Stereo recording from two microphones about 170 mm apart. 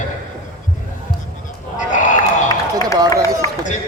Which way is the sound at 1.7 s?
45° left (ahead or behind).